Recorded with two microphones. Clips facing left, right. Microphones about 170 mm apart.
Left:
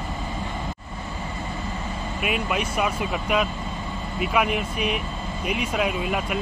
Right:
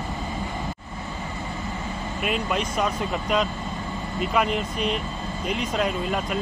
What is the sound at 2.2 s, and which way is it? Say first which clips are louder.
Speech: even; 5° left (ahead or behind).